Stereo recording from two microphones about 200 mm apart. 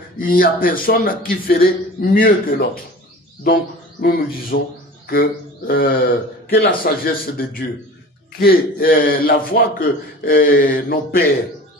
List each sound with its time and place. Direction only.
0.2 s a man's voice: 45° left (ahead or behind)
4.0 s a man's voice: 45° left (ahead or behind)